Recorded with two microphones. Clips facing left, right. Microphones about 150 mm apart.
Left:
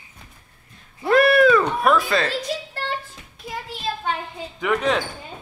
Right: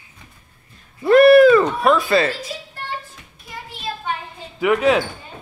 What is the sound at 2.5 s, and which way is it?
Speech, 70° left (ahead or behind).